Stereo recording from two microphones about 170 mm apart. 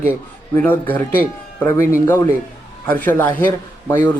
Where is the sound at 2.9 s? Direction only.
10° left (ahead or behind).